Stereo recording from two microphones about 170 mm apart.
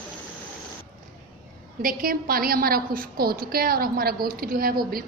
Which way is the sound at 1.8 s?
55° right (ahead or behind).